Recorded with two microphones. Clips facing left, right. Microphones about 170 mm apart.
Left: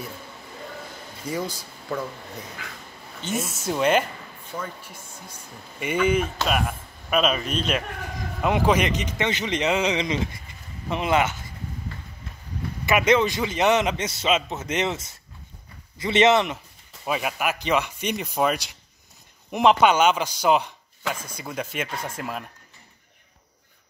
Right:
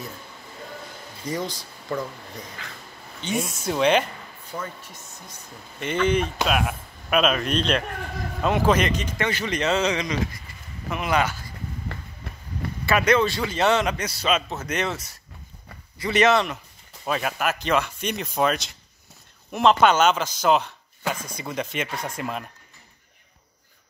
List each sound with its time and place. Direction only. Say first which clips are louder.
1.2 s a man's voice: even; 10° left (ahead or behind)
4.8 s a man's voice: left 1 dB; 10° left (ahead or behind)
12.8 s a man's voice: even; 20° left (ahead or behind)
17.0 s a man's voice: right 1 dB; 10° left (ahead or behind)